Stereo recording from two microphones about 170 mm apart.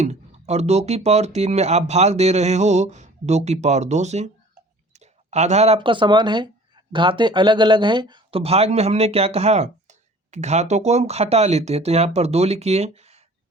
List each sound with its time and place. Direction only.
0.0 s speech: 40° right (ahead or behind)